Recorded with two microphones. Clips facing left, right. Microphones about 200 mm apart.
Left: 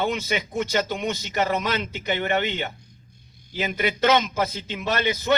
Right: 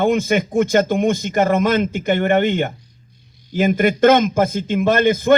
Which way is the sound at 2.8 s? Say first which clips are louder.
Even; 50° left (ahead or behind).